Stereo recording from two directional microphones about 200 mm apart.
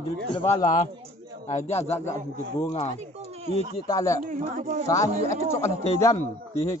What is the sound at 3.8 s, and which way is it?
Speech, 15° left (ahead or behind).